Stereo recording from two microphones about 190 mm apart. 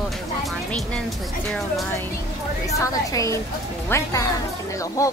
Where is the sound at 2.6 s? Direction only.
15° left (ahead or behind).